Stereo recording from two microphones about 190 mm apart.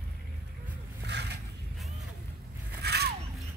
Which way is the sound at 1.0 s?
65° right (ahead or behind).